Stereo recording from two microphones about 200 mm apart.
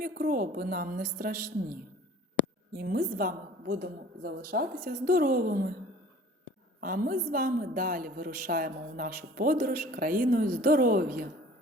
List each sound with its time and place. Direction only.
0.0 s a woman's voice: 45° right (ahead or behind)
2.7 s a woman's voice: 45° right (ahead or behind)
6.8 s a woman's voice: 45° right (ahead or behind)